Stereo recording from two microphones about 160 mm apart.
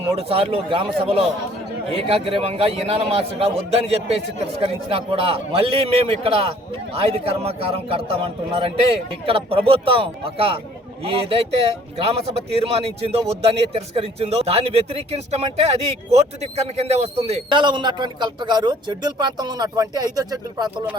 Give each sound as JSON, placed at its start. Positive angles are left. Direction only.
{"t": 0.2, "sound": "a man's voice", "side_deg": -35}